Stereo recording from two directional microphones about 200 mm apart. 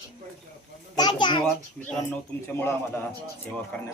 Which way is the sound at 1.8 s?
10° left (ahead or behind).